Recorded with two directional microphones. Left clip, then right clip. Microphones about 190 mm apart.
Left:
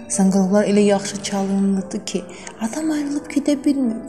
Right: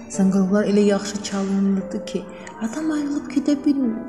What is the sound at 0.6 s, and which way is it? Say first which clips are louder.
Speech: left 2 dB; 25° left (ahead or behind).